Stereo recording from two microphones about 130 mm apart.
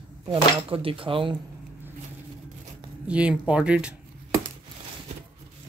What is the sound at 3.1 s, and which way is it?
Speech, 10° right (ahead or behind).